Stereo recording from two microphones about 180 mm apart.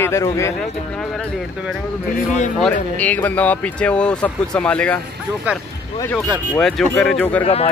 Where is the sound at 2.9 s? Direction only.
10° left (ahead or behind).